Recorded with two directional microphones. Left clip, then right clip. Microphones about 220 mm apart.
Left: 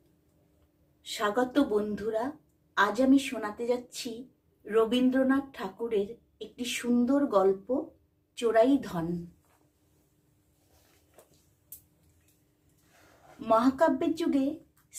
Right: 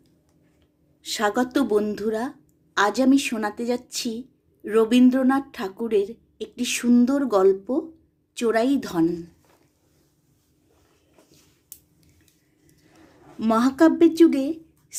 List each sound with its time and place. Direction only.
1.0 s a woman's voice: 40° right (ahead or behind)
13.4 s speech: 40° right (ahead or behind)